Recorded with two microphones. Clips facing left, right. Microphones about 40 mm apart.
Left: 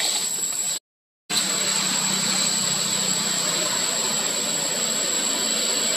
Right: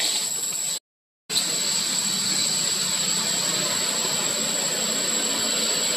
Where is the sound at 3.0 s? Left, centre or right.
Centre.